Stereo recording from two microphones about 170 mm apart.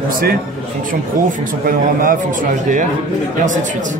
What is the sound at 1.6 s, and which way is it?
A man's voice, 55° right (ahead or behind).